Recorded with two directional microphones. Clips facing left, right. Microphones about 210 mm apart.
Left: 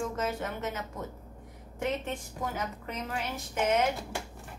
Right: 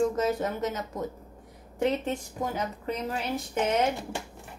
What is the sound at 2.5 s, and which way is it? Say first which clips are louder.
Speech: right 5 dB; 35° right (ahead or behind).